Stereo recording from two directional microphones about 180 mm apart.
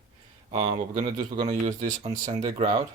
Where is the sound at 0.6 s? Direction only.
40° right (ahead or behind).